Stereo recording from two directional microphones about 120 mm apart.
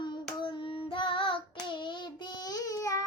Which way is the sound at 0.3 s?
40° left (ahead or behind).